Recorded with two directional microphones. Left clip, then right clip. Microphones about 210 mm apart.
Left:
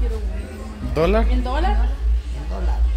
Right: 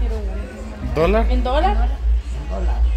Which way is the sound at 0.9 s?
10° left (ahead or behind).